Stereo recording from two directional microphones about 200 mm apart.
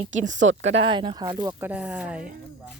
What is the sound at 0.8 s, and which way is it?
Speech, 25° right (ahead or behind).